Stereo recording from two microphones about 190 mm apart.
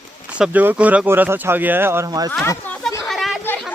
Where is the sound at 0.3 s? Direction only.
5° right (ahead or behind).